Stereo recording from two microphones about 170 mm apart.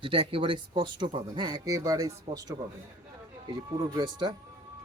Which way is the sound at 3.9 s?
25° right (ahead or behind).